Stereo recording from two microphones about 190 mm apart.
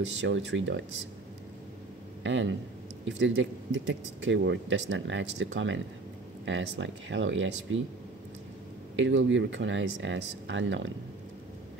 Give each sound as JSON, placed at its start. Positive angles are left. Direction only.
{"t": 0.2, "sound": "speech", "side_deg": -70}
{"t": 2.2, "sound": "speech", "side_deg": -75}
{"t": 8.9, "sound": "speech", "side_deg": -80}